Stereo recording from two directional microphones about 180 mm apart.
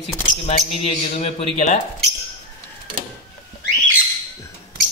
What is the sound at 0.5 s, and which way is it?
A man's voice, 35° left (ahead or behind).